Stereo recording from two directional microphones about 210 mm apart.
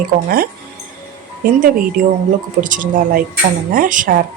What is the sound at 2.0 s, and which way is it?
A woman's voice, 40° right (ahead or behind).